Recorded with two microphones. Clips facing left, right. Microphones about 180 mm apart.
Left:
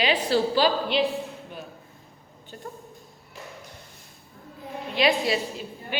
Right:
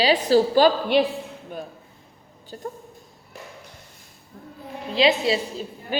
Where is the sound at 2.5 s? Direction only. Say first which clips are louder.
Right 6 dB; 35° right (ahead or behind).